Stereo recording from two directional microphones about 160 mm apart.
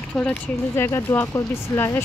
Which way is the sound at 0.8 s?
15° left (ahead or behind).